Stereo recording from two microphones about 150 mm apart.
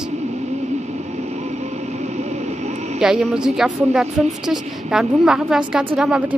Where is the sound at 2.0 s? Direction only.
50° right (ahead or behind).